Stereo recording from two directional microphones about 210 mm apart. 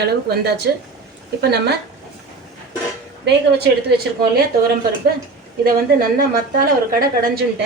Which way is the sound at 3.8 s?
50° right (ahead or behind).